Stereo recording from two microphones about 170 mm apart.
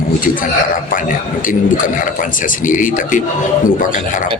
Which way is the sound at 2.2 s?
50° left (ahead or behind).